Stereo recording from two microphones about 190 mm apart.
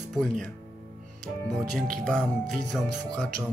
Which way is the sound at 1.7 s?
5° left (ahead or behind).